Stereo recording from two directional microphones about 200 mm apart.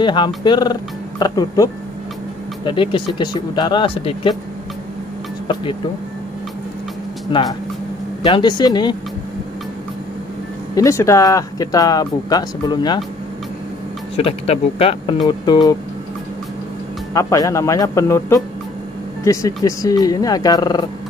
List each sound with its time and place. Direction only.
0.0 s speech: 25° left (ahead or behind)
7.3 s speech: 25° left (ahead or behind)
10.7 s speech: 15° left (ahead or behind)
14.1 s speech: 30° left (ahead or behind)
17.1 s speech: 15° left (ahead or behind)